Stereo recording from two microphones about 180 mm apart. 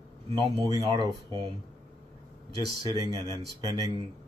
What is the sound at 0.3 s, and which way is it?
Speech, 20° right (ahead or behind).